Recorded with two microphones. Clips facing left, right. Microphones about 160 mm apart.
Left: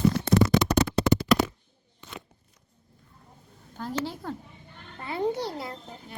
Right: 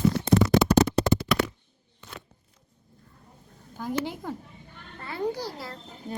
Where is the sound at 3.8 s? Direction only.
15° right (ahead or behind).